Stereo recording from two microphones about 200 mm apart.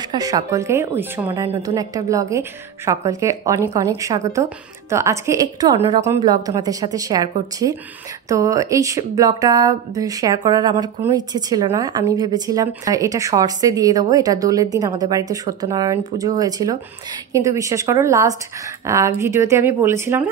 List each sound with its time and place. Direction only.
0.1 s speech: 15° right (ahead or behind)